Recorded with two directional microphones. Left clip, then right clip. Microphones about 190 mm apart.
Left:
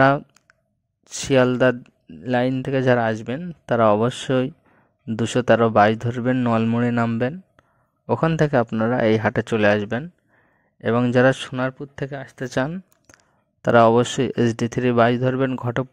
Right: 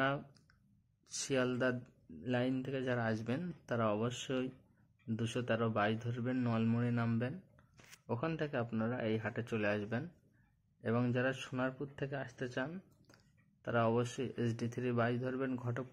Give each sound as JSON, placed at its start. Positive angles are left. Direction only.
{"t": 0.0, "sound": "a sound", "side_deg": 50}
{"t": 1.0, "sound": "speech", "side_deg": 45}
{"t": 12.7, "sound": "speech", "side_deg": 45}